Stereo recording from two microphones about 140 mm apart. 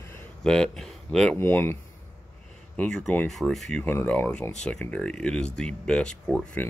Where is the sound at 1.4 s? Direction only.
15° left (ahead or behind).